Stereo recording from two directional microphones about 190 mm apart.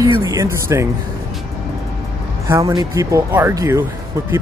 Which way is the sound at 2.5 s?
15° right (ahead or behind).